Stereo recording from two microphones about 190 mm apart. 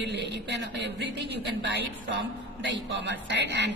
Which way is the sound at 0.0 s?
65° right (ahead or behind).